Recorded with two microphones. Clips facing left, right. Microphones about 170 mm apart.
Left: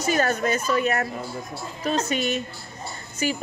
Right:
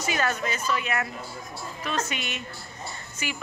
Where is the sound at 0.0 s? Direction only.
40° left (ahead or behind).